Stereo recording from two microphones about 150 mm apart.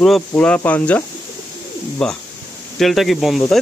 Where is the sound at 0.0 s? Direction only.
5° left (ahead or behind).